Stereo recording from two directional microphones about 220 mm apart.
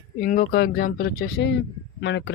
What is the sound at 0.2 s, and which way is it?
Speech, 40° left (ahead or behind).